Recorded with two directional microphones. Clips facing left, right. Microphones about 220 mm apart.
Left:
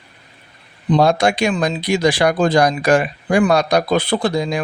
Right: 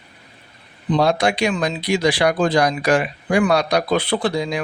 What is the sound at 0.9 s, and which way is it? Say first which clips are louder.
Speech: left 3 dB; 45° left (ahead or behind).